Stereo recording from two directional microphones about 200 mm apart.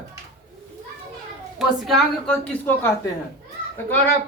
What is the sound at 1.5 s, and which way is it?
A woman's voice, centre (ahead or behind).